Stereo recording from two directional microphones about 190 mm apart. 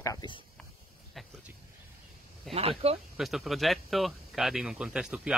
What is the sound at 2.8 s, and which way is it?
Speech, 30° right (ahead or behind).